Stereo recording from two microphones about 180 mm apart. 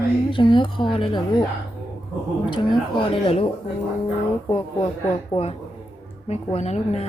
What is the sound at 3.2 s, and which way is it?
Speech, 30° left (ahead or behind).